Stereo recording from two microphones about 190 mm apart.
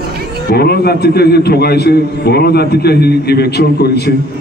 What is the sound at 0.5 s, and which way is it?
A man's voice, 55° left (ahead or behind).